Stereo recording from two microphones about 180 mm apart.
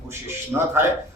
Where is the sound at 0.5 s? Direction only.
10° right (ahead or behind).